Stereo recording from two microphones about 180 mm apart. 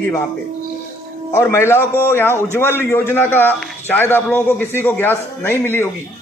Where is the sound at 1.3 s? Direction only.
15° left (ahead or behind).